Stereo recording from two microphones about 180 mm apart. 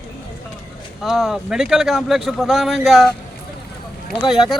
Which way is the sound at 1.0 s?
Centre (ahead or behind).